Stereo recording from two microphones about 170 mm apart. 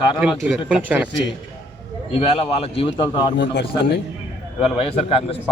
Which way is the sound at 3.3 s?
90° left.